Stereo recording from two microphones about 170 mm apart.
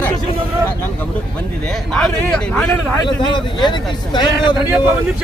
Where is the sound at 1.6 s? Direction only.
5° left (ahead or behind).